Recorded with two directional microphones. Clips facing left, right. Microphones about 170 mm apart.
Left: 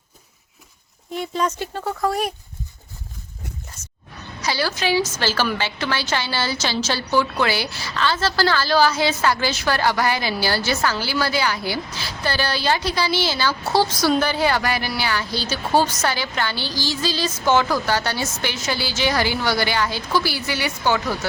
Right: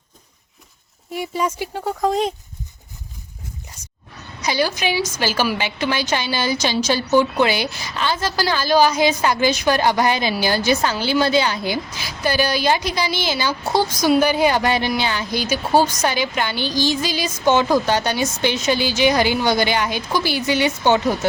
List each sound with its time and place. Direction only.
1.1 s a woman's voice: 10° right (ahead or behind)
3.8 s a sound: 15° right (ahead or behind)
4.4 s a woman's voice: 15° right (ahead or behind)